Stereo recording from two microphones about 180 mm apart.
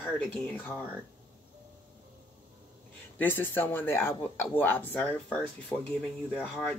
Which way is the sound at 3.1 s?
10° left (ahead or behind).